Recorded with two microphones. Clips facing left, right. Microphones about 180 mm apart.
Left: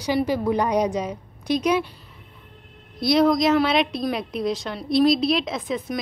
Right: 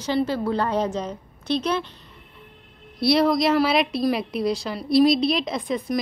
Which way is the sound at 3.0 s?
Centre (ahead or behind).